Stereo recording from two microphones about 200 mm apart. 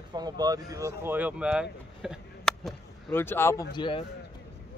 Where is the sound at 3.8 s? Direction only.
25° left (ahead or behind).